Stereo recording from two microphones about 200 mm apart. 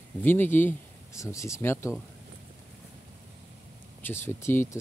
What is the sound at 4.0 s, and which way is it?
Speech, 10° left (ahead or behind).